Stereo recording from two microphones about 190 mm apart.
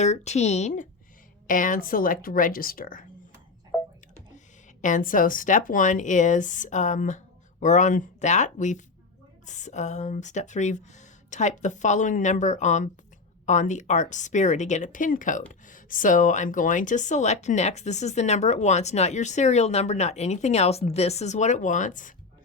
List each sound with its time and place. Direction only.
0.0 s speech: 35° left (ahead or behind)
4.8 s speech: 45° left (ahead or behind)